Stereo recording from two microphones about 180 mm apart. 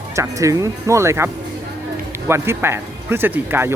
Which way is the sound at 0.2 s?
20° right (ahead or behind).